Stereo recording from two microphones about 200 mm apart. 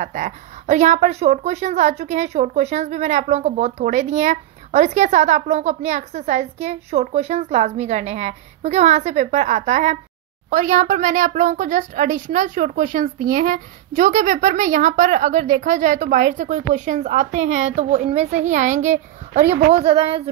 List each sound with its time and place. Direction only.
0.0 s a woman's voice: 35° right (ahead or behind)